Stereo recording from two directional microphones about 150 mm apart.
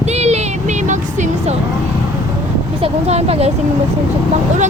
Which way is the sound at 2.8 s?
45° right (ahead or behind).